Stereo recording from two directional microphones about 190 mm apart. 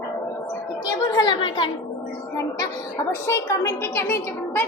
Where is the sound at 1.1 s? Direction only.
20° left (ahead or behind).